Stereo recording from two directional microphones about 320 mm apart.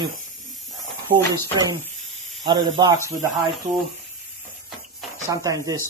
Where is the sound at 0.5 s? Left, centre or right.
Centre.